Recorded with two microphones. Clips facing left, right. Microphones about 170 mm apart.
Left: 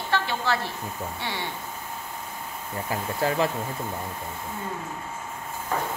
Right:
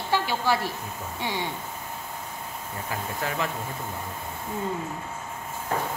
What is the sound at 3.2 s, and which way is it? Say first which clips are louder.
Speech: left 7 dB; 35° left (ahead or behind).